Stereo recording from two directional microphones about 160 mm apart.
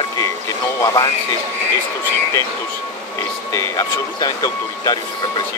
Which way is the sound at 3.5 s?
25° left (ahead or behind).